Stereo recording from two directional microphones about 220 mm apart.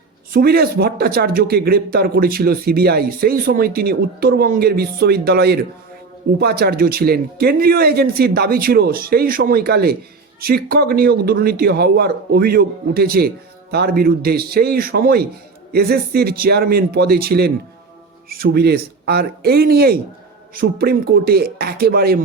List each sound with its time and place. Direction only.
0.3 s speech: 45° right (ahead or behind)